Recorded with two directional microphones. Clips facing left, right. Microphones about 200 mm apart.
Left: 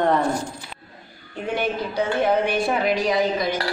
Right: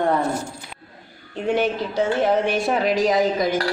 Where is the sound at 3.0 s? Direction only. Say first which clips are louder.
Right 2 dB; 45° right (ahead or behind).